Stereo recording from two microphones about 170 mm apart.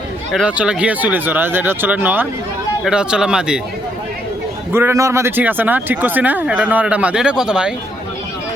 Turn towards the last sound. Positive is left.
turn(degrees=-5)  # may be behind; listen again after turning